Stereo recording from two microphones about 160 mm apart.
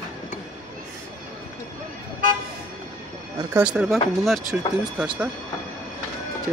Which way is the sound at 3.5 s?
5° right (ahead or behind).